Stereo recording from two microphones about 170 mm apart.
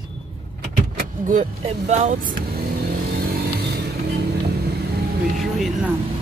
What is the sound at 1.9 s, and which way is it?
Speech, 40° right (ahead or behind).